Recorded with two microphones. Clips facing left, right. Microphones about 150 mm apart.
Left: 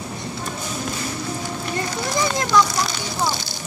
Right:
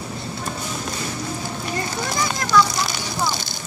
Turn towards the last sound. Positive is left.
turn(degrees=20)  # may be behind; listen again after turning